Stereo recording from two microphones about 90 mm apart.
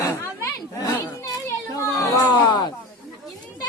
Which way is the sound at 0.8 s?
40° left (ahead or behind).